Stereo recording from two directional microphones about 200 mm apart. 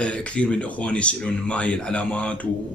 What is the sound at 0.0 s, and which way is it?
Speech, 5° left (ahead or behind).